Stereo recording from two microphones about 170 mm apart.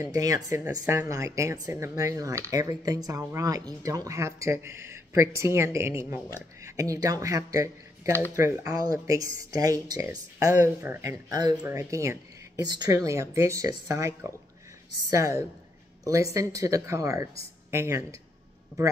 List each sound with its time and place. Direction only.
0.0 s speech: 20° right (ahead or behind)